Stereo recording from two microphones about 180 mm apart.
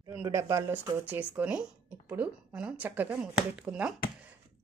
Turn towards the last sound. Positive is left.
turn(degrees=-5)  # may be behind; listen again after turning